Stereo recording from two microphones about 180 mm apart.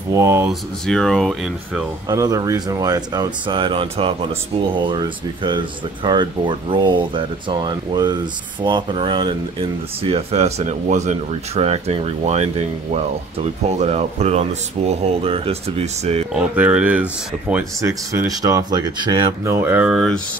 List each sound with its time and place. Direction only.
0.1 s speech: 15° right (ahead or behind)
0.5 s speech: 5° left (ahead or behind)
2.0 s speech: 20° right (ahead or behind); by 16.2 s 35° right (ahead or behind)
16.5 s speech: 10° right (ahead or behind)
17.8 s speech: 20° right (ahead or behind); by 20.2 s centre (ahead or behind)